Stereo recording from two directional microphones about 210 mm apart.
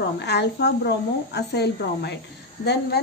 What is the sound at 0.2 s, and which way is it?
Speech, 55° left (ahead or behind).